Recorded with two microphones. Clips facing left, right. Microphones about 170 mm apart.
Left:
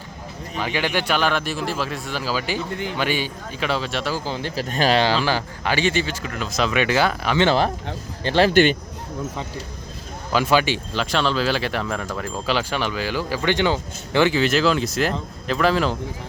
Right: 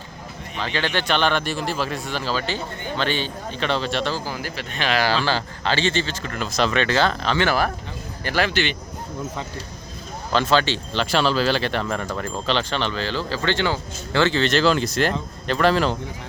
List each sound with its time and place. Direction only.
0.5 s speech: 10° left (ahead or behind)
4.3 s speech: 25° left (ahead or behind)
4.7 s speech: 40° left (ahead or behind)
4.9 s speech: 15° left (ahead or behind)
7.3 s speech: 20° left (ahead or behind)
8.4 s speech: 45° left (ahead or behind)
10.3 s speech: 10° left (ahead or behind)
11.0 s speech: 5° right (ahead or behind)